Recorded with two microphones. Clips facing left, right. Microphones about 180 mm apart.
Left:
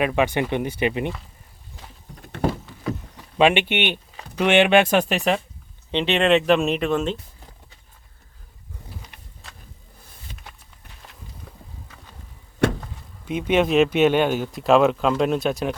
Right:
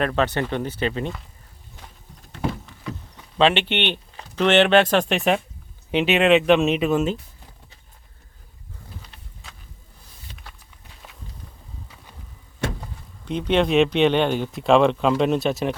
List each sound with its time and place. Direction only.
0.0 s speech: 10° left (ahead or behind)
2.1 s a sound: 60° left (ahead or behind)
3.3 s speech: 10° left (ahead or behind); by 7.2 s 5° right (ahead or behind)
13.2 s speech: 5° left (ahead or behind)